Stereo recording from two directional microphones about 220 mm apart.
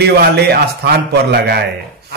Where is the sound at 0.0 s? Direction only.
45° right (ahead or behind).